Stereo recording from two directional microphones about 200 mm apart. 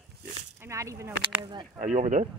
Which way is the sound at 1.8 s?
35° right (ahead or behind).